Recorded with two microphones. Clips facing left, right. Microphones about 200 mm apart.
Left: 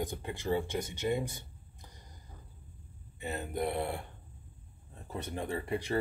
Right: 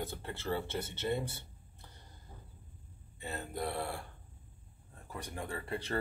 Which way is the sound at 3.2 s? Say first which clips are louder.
Left 4 dB; 20° left (ahead or behind).